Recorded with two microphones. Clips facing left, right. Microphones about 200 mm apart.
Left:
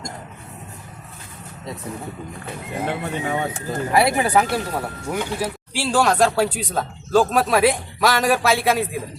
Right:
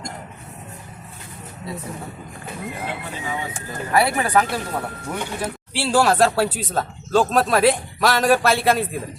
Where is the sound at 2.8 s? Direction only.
60° left (ahead or behind).